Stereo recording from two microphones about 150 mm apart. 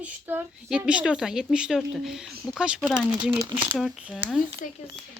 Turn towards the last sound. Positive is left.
turn(degrees=60)  # may be behind; listen again after turning